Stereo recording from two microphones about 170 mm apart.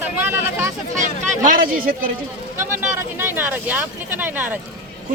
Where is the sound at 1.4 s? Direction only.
55° right (ahead or behind).